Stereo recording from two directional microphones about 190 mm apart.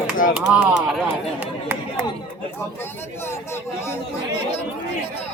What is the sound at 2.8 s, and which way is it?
Speech, 10° left (ahead or behind).